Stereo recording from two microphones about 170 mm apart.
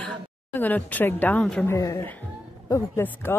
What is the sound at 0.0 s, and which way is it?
Speech, 10° left (ahead or behind).